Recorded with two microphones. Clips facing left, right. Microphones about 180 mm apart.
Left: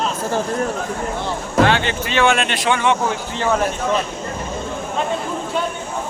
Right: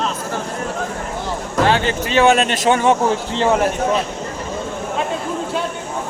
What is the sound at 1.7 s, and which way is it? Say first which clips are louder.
Speech: right 2 dB; 35° right (ahead or behind).